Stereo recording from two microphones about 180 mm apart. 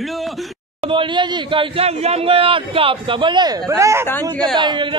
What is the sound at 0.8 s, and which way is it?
A man's voice, 30° right (ahead or behind).